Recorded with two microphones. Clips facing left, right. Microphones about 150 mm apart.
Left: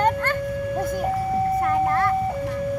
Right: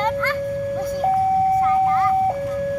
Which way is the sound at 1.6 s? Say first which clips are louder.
Right 3 dB; 60° left (ahead or behind).